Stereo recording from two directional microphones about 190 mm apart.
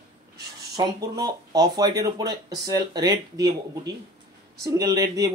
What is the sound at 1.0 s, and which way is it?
Speech, 20° right (ahead or behind).